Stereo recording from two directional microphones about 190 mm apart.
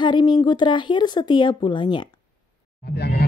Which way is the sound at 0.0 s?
25° left (ahead or behind).